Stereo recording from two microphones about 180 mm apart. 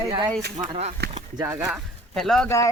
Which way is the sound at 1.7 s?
Centre (ahead or behind).